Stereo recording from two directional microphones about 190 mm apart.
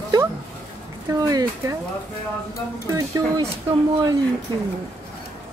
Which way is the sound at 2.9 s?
15° right (ahead or behind).